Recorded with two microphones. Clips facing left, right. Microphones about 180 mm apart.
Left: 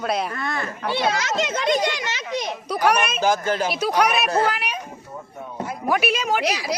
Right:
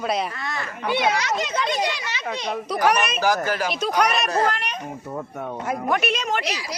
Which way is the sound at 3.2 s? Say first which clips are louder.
Left 2 dB; 25° left (ahead or behind).